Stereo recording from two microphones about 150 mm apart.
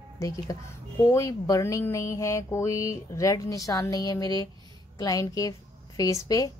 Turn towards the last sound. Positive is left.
turn(degrees=25)  # may be behind; listen again after turning